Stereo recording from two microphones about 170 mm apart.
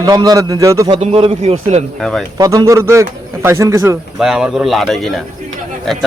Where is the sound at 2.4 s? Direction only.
20° right (ahead or behind).